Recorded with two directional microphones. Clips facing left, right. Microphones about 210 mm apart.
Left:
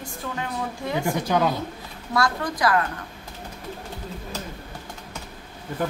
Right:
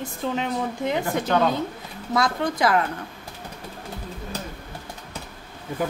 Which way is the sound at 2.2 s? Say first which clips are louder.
Right 1 dB; 25° right (ahead or behind).